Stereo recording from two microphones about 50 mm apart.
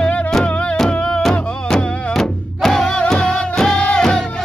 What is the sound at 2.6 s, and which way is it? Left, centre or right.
Music, centre.